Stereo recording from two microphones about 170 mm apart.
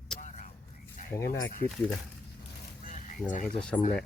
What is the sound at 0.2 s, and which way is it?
Vehicle, 50° left (ahead or behind).